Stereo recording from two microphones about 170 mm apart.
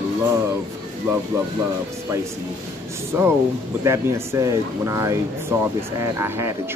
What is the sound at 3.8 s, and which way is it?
Speech, 15° right (ahead or behind).